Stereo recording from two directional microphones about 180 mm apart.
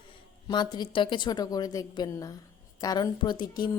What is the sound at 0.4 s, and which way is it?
A woman's voice, 25° left (ahead or behind).